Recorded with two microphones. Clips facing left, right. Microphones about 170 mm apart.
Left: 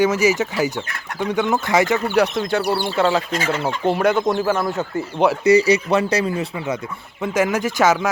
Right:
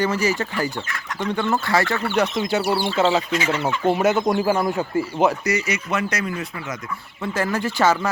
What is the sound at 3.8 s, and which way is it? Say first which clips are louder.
Speech: left 1 dB; 5° right (ahead or behind).